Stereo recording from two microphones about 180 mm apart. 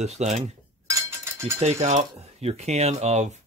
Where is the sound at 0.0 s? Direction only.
40° right (ahead or behind).